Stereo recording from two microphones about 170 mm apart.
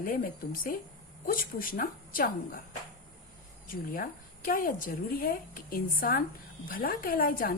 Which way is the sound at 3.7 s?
55° left (ahead or behind).